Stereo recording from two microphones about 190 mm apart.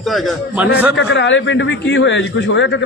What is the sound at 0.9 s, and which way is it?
A man's voice, 75° left (ahead or behind).